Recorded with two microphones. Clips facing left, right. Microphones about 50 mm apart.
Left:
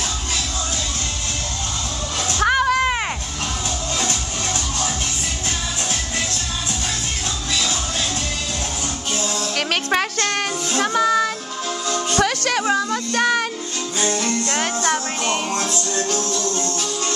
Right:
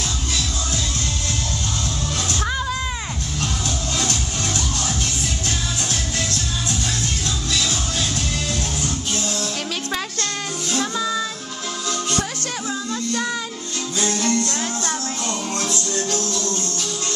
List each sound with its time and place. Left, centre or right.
2.4 s a sound: left
9.8 s music: left
12.2 s music: left
13.9 s music: left
14.5 s music: left
15.7 s music: left